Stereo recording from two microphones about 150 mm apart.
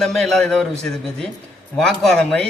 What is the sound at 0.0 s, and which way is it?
Speech, centre (ahead or behind).